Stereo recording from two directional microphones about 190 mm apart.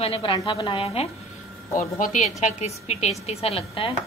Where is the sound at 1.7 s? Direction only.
45° left (ahead or behind).